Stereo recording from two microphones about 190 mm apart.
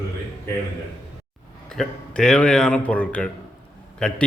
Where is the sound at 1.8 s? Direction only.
Centre (ahead or behind).